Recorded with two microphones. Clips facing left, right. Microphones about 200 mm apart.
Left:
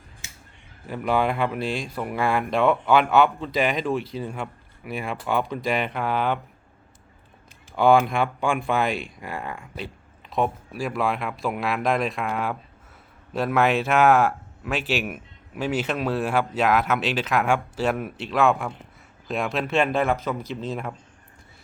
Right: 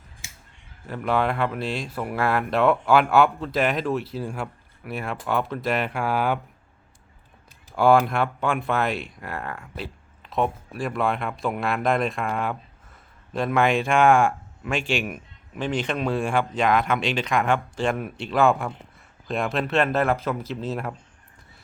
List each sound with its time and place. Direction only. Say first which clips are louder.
0.9 s speech: left 1 dB; centre (ahead or behind)
7.9 s speech: even; centre (ahead or behind)